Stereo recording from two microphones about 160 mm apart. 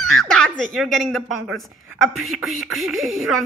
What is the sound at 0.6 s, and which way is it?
A woman's voice, centre (ahead or behind).